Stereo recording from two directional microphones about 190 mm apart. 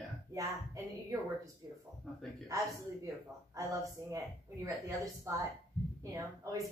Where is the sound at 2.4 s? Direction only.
15° right (ahead or behind).